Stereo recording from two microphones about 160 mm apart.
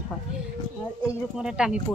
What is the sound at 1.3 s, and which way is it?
Speech, 5° right (ahead or behind).